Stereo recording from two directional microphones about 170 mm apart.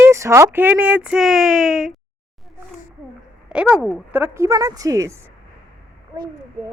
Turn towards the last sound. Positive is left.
turn(degrees=-20)  # may be behind; listen again after turning